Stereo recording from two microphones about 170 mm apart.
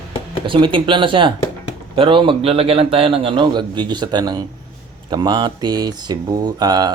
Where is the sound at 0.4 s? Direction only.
30° right (ahead or behind).